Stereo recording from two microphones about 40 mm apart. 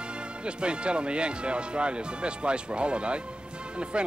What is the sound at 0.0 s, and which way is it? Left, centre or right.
Speech, right.